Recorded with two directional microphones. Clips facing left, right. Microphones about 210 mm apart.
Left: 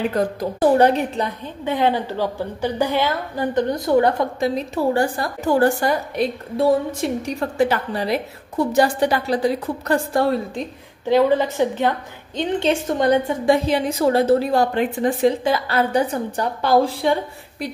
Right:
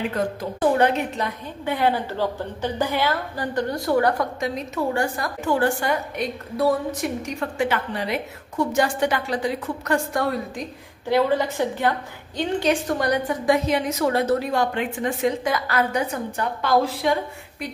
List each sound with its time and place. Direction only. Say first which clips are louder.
0.1 s a woman's voice: left 4 dB; 40° left (ahead or behind)
1.6 s a woman's voice: left 2 dB; 20° left (ahead or behind)
11.1 s a woman's voice: left 4 dB; 15° left (ahead or behind)